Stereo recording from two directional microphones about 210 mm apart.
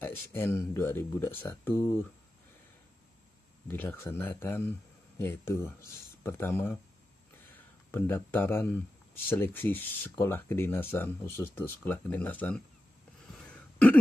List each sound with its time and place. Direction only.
0.0 s speech: 10° left (ahead or behind)
3.6 s speech: 10° left (ahead or behind)